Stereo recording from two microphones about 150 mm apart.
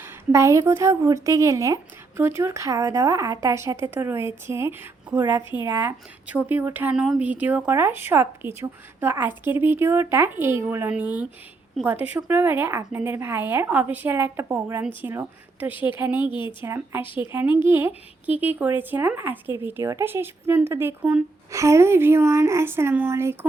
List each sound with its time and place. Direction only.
0.0 s a woman's voice: 20° right (ahead or behind)
16.1 s speech: 30° left (ahead or behind)
16.6 s a woman's voice: 15° right (ahead or behind)
17.0 s speech: 35° left (ahead or behind)
17.7 s a woman's voice: 15° right (ahead or behind)